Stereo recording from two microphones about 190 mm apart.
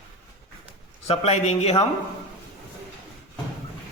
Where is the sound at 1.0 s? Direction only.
35° left (ahead or behind).